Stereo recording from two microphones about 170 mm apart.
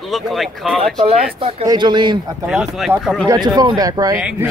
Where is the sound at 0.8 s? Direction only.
35° right (ahead or behind).